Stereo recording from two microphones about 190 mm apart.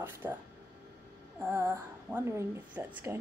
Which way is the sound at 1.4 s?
10° right (ahead or behind).